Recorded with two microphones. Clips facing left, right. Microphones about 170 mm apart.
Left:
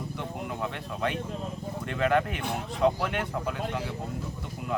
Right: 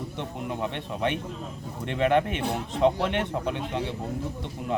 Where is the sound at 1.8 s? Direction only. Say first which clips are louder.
Right 3 dB; 20° right (ahead or behind).